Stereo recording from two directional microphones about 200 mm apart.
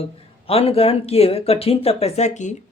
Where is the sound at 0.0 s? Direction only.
30° left (ahead or behind).